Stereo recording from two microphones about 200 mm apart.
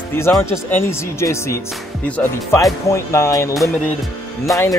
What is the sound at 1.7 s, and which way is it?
Speech, 5° left (ahead or behind).